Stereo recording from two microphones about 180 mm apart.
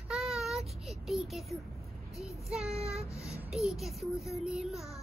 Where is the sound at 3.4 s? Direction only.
Centre (ahead or behind).